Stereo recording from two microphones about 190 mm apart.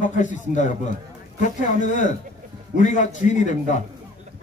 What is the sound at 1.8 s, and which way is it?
A man's voice, 40° left (ahead or behind).